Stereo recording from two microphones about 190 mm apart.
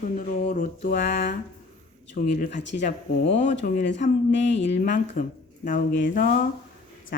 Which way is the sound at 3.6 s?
45° left (ahead or behind).